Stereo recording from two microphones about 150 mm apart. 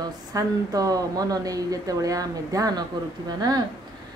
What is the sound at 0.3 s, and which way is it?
Speech, 25° right (ahead or behind).